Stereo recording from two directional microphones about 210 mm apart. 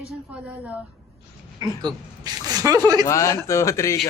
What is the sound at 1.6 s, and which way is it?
Speech, 20° right (ahead or behind).